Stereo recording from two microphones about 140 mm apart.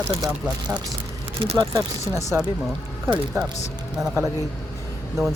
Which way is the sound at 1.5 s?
25° right (ahead or behind).